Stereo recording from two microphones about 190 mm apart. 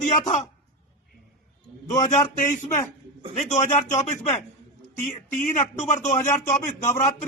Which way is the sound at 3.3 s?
35° left (ahead or behind).